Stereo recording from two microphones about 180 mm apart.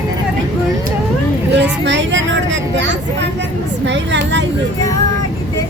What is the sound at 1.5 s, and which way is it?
Vehicle, 80° right.